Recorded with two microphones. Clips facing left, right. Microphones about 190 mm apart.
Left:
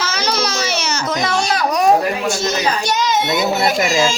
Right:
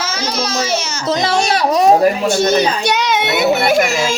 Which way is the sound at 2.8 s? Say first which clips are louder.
Right 2 dB; 65° right (ahead or behind).